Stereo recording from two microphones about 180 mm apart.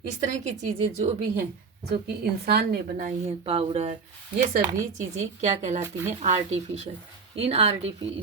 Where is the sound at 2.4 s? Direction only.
60° right (ahead or behind).